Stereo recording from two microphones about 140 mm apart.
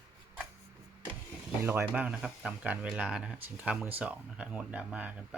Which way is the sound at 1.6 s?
15° right (ahead or behind).